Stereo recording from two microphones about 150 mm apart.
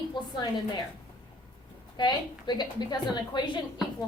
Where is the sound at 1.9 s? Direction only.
30° left (ahead or behind).